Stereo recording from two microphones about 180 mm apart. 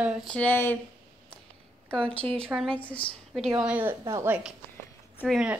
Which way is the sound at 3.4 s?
5° right (ahead or behind).